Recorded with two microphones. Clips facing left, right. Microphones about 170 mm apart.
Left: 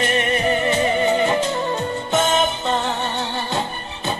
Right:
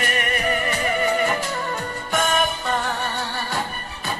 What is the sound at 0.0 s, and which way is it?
Music, 25° left (ahead or behind).